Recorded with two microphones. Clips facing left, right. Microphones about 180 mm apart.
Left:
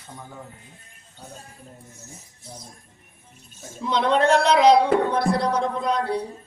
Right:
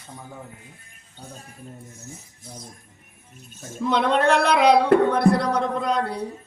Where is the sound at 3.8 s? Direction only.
60° right (ahead or behind).